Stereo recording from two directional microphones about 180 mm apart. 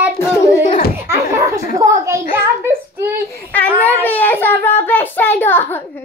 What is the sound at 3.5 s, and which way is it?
A child's voice, 10° left (ahead or behind).